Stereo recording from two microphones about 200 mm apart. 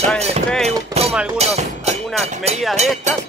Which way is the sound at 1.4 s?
30° right (ahead or behind).